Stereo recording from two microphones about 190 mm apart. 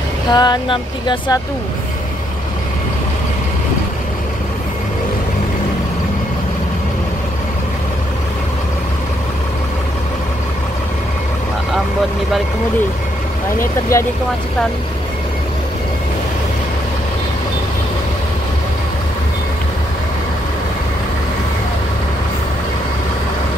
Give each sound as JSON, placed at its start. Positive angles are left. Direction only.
{"t": 0.3, "sound": "speech", "side_deg": 20}
{"t": 13.9, "sound": "speech", "side_deg": 15}